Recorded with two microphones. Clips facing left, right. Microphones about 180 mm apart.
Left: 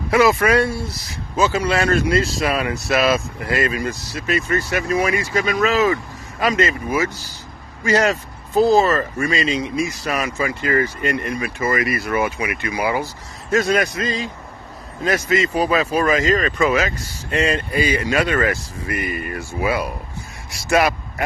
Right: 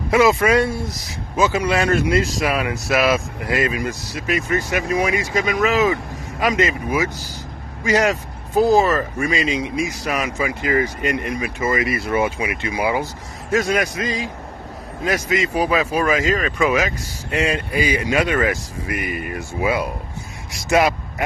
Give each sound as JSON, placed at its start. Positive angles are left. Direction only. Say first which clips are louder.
{"t": 0.1, "sound": "speech", "louder": "even", "side_deg": -20}